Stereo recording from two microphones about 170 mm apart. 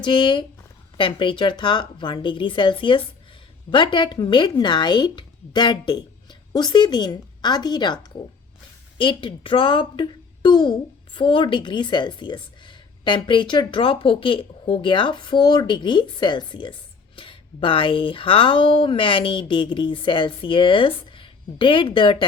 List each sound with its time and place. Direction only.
0.0 s speech: 30° left (ahead or behind)